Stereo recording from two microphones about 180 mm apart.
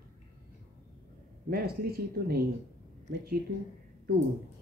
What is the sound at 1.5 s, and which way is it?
Speech, 60° right (ahead or behind).